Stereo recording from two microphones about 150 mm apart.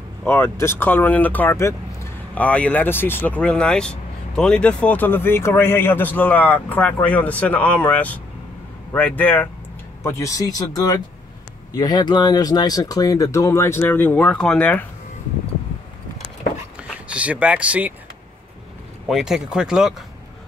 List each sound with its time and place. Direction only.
0.2 s speech: 15° left (ahead or behind)
17.1 s speech: 10° right (ahead or behind)
19.0 s speech: centre (ahead or behind)